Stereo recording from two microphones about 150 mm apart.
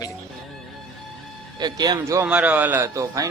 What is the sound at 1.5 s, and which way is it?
Speech, 30° right (ahead or behind).